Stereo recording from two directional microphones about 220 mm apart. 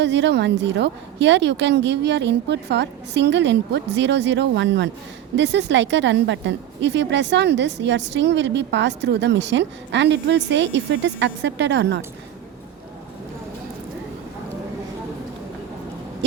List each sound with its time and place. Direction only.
0.0 s a woman's voice: 50° right (ahead or behind)